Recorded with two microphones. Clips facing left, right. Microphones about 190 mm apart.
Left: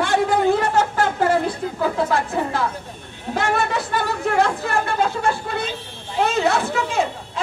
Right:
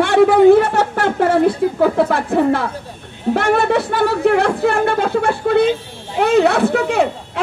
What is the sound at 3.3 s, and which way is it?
Speech, 60° right (ahead or behind).